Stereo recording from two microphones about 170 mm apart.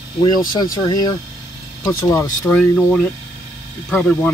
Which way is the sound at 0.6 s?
25° left (ahead or behind).